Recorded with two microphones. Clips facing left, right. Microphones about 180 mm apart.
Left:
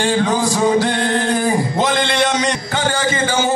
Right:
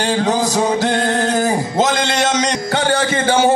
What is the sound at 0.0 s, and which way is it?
Music, 40° right (ahead or behind).